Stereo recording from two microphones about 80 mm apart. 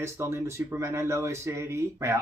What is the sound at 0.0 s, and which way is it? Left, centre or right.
Speech, right.